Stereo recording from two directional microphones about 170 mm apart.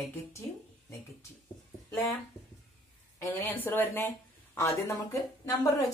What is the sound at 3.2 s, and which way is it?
A woman's voice, 15° left (ahead or behind).